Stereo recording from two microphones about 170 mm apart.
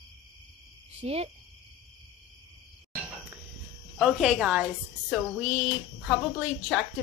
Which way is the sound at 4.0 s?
Centre (ahead or behind).